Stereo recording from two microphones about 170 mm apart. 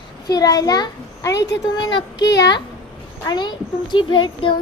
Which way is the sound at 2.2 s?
90° left.